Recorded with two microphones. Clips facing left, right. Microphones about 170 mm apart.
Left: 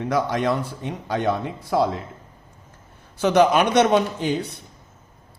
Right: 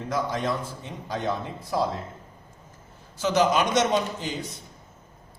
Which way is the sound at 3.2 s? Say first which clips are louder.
Left 5 dB; 60° left (ahead or behind).